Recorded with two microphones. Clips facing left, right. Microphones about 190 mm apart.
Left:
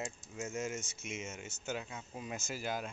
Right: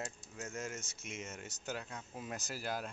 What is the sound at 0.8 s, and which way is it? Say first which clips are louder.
Speech: left 3 dB; 35° right (ahead or behind).